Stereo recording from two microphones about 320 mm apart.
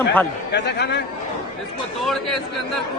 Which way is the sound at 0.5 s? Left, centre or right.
Left.